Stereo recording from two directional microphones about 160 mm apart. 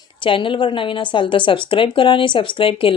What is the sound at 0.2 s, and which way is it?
A woman's voice, 30° left (ahead or behind).